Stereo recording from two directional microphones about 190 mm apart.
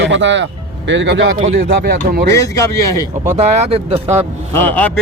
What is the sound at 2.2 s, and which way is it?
Speech, 15° left (ahead or behind).